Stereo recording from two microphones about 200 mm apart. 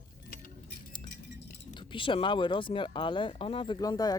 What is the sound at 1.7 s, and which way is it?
Speech, 25° left (ahead or behind).